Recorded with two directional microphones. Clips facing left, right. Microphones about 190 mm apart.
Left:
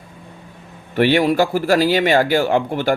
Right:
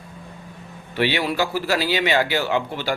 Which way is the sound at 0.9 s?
50° left (ahead or behind).